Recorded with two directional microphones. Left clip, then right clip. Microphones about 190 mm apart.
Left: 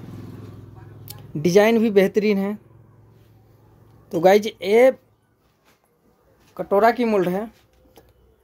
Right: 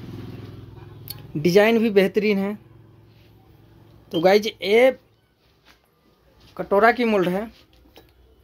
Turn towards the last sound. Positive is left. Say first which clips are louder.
# even
turn(degrees=15)  # may be behind; listen again after turning